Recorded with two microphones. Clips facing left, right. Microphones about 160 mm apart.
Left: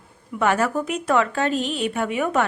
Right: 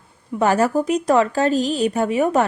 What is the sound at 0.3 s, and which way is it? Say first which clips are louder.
A woman's voice: right 4 dB; 35° right (ahead or behind).